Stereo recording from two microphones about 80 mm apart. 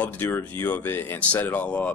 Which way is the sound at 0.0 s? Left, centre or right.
Left.